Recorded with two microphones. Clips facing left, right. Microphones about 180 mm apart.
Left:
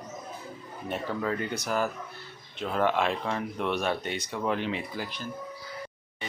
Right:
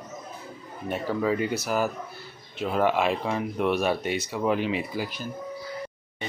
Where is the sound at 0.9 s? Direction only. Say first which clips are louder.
Right 5 dB; 10° right (ahead or behind).